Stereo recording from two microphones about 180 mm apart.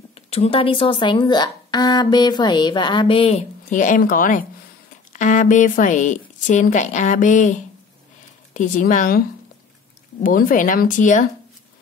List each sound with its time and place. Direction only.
0.1 s a woman's voice: 35° left (ahead or behind)
8.5 s a woman's voice: 45° left (ahead or behind)
10.2 s a woman's voice: 50° left (ahead or behind)